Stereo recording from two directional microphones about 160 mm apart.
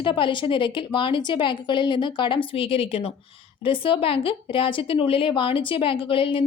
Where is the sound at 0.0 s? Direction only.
30° left (ahead or behind).